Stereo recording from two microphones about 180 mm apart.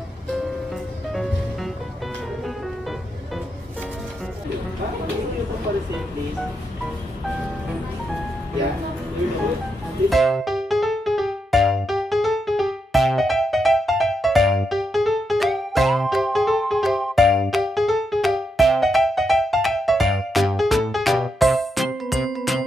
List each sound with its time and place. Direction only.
1.1 s music: centre (ahead or behind)
10.0 s music: centre (ahead or behind)